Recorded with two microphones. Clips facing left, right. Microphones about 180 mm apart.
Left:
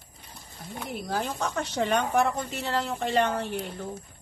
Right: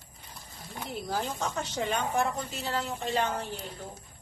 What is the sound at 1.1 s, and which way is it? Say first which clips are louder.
A woman's voice: left 3 dB; 65° left (ahead or behind).